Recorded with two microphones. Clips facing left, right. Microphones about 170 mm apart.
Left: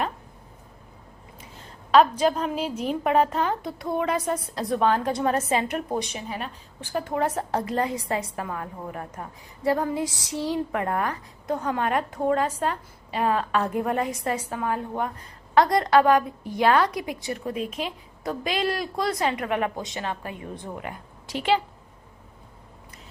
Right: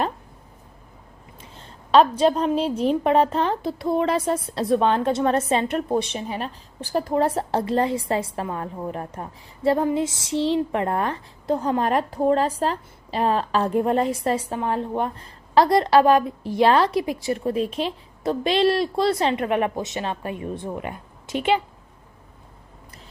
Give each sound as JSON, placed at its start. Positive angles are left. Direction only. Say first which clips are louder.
{"t": 1.9, "sound": "a woman's voice", "louder": "right 2 dB", "side_deg": -30}